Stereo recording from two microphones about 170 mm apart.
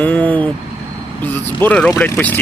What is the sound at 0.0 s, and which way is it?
Vehicle, 10° left (ahead or behind).